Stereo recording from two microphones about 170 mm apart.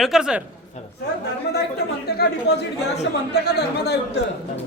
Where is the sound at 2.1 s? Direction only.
70° left (ahead or behind).